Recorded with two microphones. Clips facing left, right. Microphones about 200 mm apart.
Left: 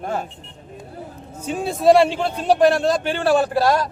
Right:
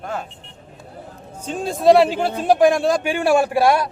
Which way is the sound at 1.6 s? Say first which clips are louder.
Right 1 dB; centre (ahead or behind).